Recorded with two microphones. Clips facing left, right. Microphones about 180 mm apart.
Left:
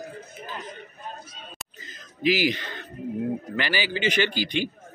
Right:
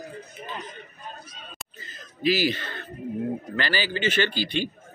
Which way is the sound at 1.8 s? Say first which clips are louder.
Even; 15° left (ahead or behind).